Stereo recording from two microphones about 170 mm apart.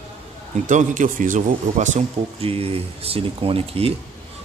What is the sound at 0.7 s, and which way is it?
Speech, 45° right (ahead or behind).